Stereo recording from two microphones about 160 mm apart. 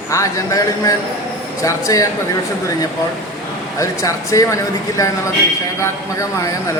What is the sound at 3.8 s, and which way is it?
A man's voice, 20° left (ahead or behind).